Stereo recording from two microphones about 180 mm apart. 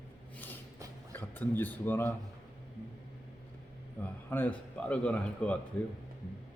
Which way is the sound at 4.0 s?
10° left (ahead or behind).